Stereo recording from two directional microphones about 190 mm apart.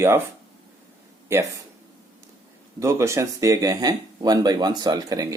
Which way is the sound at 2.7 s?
15° right (ahead or behind).